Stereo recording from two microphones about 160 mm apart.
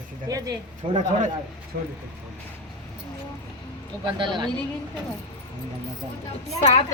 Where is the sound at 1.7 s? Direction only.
65° right (ahead or behind).